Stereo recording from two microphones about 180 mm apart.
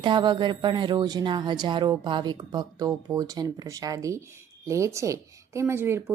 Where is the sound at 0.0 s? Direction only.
25° right (ahead or behind).